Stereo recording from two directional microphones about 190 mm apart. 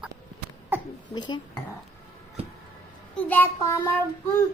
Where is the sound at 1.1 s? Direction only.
20° left (ahead or behind).